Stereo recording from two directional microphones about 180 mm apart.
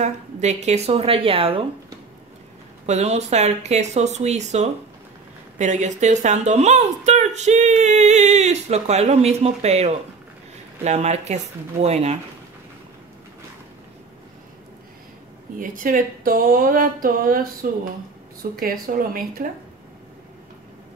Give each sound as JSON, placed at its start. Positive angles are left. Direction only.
{"t": 0.0, "sound": "speech", "side_deg": -40}
{"t": 2.9, "sound": "speech", "side_deg": -40}
{"t": 15.6, "sound": "speech", "side_deg": -45}